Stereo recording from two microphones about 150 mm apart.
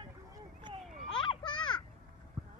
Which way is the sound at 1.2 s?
30° left (ahead or behind).